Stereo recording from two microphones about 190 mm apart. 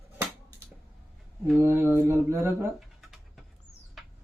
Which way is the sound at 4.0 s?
Centre (ahead or behind).